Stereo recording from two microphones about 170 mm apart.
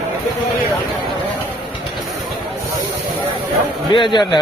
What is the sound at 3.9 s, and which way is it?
Speech, 30° left (ahead or behind).